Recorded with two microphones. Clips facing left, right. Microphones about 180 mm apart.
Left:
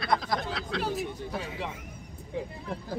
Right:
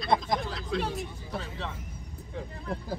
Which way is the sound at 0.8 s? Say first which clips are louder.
Left 3 dB; 5° left (ahead or behind).